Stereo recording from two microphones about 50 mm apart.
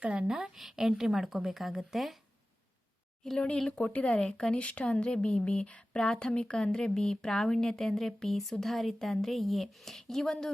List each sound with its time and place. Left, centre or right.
0.0 s a woman's voice: right
0.3 s a woman's voice: centre
3.2 s speech: centre
3.7 s speech: left; by 10.5 s centre